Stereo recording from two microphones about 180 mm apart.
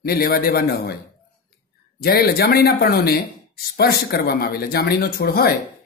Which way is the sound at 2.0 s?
55° left (ahead or behind).